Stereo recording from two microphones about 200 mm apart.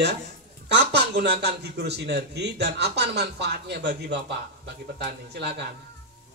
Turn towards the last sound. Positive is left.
turn(degrees=-55)  # may be behind; listen again after turning